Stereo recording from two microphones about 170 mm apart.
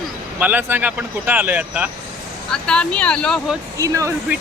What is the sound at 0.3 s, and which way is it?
Speech, 10° right (ahead or behind).